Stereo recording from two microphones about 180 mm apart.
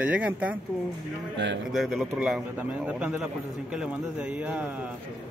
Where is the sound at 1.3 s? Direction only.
75° right (ahead or behind).